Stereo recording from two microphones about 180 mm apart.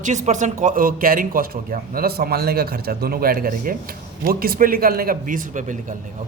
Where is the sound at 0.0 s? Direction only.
40° right (ahead or behind).